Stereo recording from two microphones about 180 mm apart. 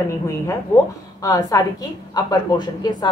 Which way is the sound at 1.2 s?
20° left (ahead or behind).